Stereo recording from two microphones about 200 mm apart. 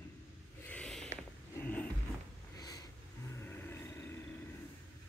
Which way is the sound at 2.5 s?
20° left (ahead or behind).